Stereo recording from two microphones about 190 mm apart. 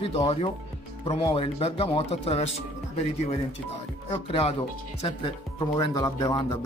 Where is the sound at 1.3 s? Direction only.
30° left (ahead or behind).